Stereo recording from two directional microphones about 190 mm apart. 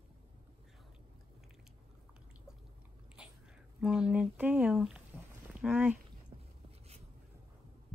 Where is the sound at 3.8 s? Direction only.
5° right (ahead or behind).